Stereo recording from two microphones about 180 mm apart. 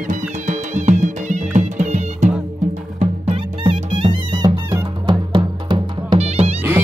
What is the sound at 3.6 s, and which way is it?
Music, 25° right (ahead or behind).